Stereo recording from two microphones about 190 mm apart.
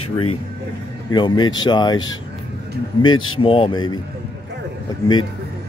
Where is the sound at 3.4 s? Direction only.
30° left (ahead or behind).